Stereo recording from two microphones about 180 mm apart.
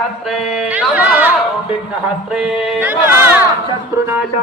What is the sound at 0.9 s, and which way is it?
Chatter, 10° right (ahead or behind).